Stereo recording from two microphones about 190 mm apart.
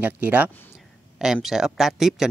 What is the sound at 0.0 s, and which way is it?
Speech, 10° right (ahead or behind).